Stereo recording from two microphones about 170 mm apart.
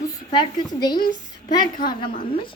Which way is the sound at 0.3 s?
25° left (ahead or behind).